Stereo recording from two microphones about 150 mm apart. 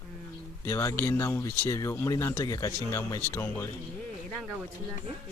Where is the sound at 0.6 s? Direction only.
20° left (ahead or behind).